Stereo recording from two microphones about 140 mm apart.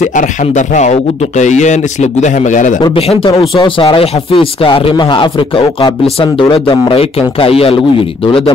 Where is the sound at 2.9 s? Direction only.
45° left (ahead or behind).